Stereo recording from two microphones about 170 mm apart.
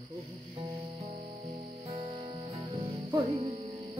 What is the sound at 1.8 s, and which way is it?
Music, 35° right (ahead or behind).